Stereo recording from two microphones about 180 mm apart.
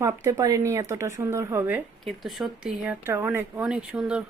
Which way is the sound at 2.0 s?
Centre (ahead or behind).